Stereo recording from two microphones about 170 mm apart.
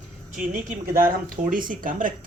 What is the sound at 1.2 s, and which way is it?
Speech, 55° right (ahead or behind).